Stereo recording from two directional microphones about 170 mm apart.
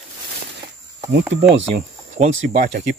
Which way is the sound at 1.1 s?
80° right.